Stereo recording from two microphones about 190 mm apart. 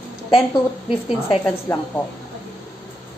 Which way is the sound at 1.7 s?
15° left (ahead or behind).